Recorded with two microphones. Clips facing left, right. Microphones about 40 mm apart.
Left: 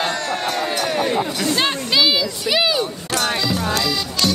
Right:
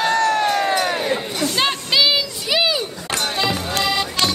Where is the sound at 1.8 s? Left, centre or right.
Centre.